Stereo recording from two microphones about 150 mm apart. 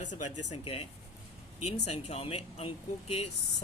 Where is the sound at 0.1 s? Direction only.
35° left (ahead or behind).